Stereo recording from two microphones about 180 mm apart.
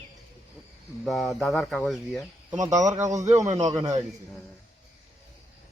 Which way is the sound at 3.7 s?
20° right (ahead or behind).